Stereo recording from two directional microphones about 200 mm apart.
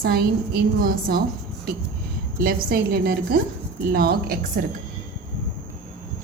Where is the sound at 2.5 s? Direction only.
50° right (ahead or behind).